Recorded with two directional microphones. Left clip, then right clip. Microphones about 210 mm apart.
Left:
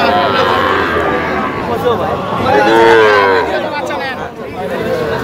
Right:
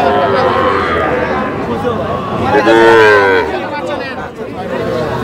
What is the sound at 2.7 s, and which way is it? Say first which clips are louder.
Cattle: right 2 dB; 40° right (ahead or behind).